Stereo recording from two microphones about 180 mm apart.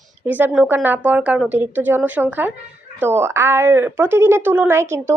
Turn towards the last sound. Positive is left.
turn(degrees=-15)  # may be behind; listen again after turning